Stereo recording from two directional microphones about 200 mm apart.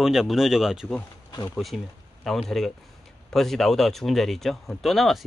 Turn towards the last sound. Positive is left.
turn(degrees=0)  # may be behind; listen again after turning